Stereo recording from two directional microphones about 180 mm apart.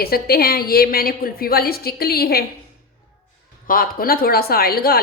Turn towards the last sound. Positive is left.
turn(degrees=60)  # may be behind; listen again after turning